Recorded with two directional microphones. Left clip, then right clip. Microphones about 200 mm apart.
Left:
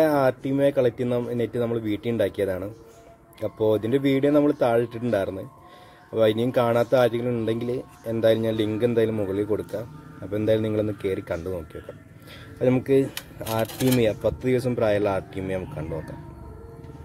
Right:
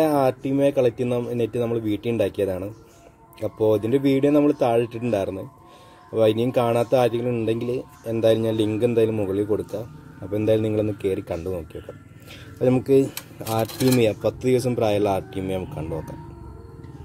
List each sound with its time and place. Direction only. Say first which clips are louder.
0.0 s speech: right 1 dB; 10° right (ahead or behind)
10.3 s speech: right 2 dB; 10° right (ahead or behind)
15.0 s speech: right 2 dB; 20° left (ahead or behind)